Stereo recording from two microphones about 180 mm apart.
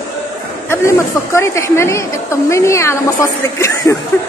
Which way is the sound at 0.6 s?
15° left (ahead or behind).